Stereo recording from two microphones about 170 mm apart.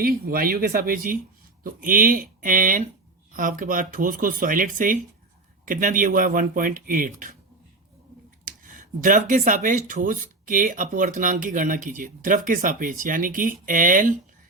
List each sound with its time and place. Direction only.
0.0 s speech: 60° right (ahead or behind)
8.4 s speech: 50° right (ahead or behind)